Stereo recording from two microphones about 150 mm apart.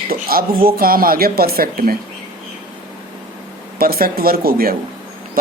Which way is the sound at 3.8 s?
80° right.